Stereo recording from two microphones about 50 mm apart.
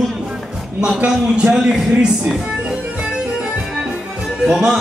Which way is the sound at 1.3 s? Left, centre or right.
Centre.